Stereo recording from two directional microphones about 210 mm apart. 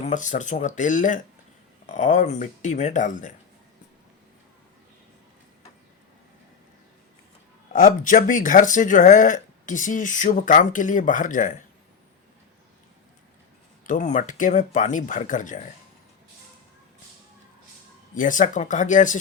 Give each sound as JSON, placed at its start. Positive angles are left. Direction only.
{"t": 0.0, "sound": "speech", "side_deg": 35}
{"t": 7.7, "sound": "speech", "side_deg": 40}
{"t": 13.8, "sound": "speech", "side_deg": 35}
{"t": 18.1, "sound": "speech", "side_deg": 40}